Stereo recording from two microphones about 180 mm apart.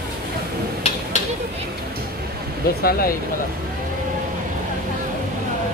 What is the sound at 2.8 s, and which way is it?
Speech, 55° left (ahead or behind).